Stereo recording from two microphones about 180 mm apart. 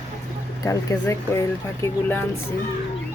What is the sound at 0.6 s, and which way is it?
Speech, 15° left (ahead or behind).